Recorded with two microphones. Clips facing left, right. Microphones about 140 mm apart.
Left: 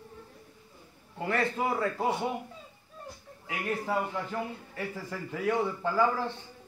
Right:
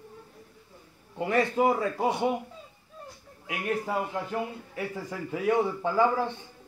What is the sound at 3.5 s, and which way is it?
A man's voice, 15° right (ahead or behind).